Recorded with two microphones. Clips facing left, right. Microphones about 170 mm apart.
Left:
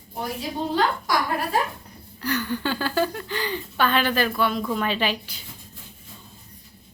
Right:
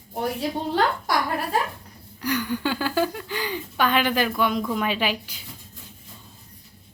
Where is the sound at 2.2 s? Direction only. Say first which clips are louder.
Right 1 dB; 10° right (ahead or behind).